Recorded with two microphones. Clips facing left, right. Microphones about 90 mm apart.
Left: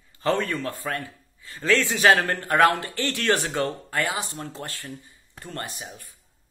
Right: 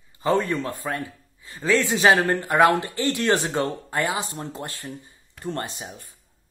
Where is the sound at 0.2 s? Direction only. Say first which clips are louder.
Right 2 dB; 20° right (ahead or behind).